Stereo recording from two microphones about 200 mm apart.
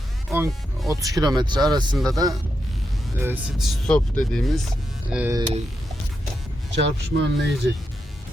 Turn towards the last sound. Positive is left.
turn(degrees=-60)  # may be behind; listen again after turning